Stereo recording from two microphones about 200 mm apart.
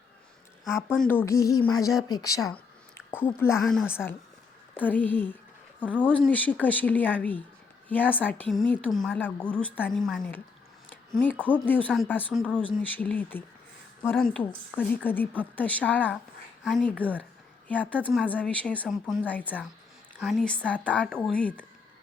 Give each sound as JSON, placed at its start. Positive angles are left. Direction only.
{"t": 1.0, "sound": "speech", "side_deg": 10}
{"t": 3.0, "sound": "a sound", "side_deg": 0}
{"t": 3.3, "sound": "speech", "side_deg": 15}
{"t": 3.6, "sound": "speech", "side_deg": 0}
{"t": 3.8, "sound": "speech", "side_deg": 10}
{"t": 14.8, "sound": "speech", "side_deg": 10}